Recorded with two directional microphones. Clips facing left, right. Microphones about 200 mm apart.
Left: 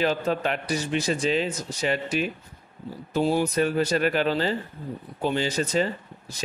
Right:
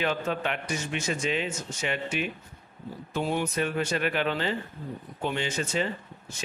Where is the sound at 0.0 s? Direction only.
35° left (ahead or behind).